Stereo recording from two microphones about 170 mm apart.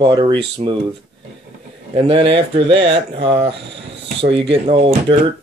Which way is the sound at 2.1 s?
30° right (ahead or behind).